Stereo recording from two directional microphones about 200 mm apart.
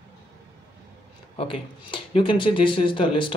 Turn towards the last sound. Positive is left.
turn(degrees=25)  # may be behind; listen again after turning